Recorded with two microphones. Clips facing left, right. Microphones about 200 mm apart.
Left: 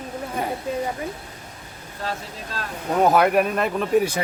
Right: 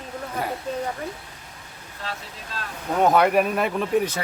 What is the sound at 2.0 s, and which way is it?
Speech, 45° left (ahead or behind).